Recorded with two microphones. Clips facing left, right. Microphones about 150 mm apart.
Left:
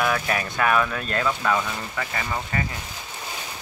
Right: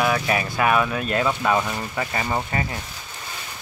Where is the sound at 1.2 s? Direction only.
25° right (ahead or behind).